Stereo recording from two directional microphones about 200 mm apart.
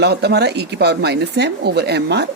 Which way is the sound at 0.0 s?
55° right (ahead or behind).